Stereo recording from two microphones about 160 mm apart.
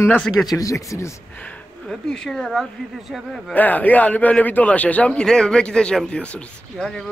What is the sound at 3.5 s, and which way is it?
A man's voice, 10° left (ahead or behind).